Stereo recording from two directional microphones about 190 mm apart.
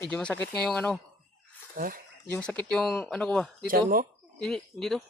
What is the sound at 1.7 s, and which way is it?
Speech, 50° right (ahead or behind).